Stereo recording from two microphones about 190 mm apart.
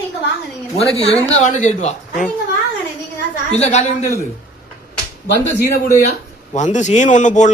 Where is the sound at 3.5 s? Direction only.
35° left (ahead or behind).